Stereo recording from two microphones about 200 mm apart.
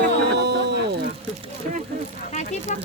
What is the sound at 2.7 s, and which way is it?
Speech, 40° left (ahead or behind).